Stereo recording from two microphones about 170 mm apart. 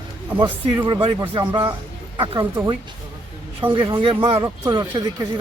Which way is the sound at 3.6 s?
30° right (ahead or behind).